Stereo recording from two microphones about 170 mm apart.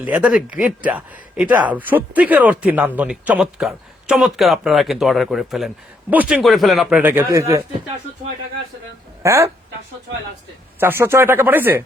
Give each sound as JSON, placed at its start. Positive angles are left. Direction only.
{"t": 0.0, "sound": "speech", "side_deg": -10}
{"t": 7.0, "sound": "speech", "side_deg": -10}
{"t": 9.2, "sound": "speech", "side_deg": -15}
{"t": 10.8, "sound": "speech", "side_deg": -15}